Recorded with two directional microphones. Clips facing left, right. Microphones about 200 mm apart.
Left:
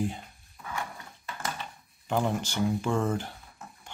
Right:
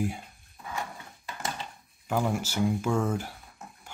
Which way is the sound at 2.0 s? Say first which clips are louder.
Even; 10° right (ahead or behind).